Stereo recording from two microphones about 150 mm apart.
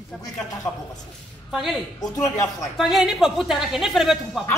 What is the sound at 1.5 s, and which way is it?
Speech, centre (ahead or behind).